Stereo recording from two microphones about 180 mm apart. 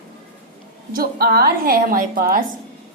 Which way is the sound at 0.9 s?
55° right (ahead or behind).